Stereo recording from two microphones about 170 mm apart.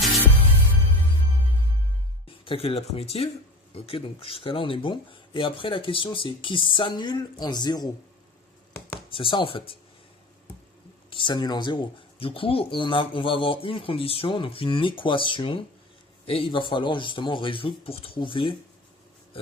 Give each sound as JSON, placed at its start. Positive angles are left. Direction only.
{"t": 2.2, "sound": "speech", "side_deg": 30}
{"t": 9.1, "sound": "speech", "side_deg": 30}
{"t": 11.1, "sound": "speech", "side_deg": 30}